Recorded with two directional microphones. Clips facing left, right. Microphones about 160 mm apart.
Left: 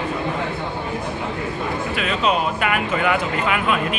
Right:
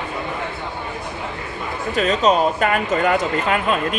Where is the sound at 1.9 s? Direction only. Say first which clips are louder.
Right 6 dB; 40° right (ahead or behind).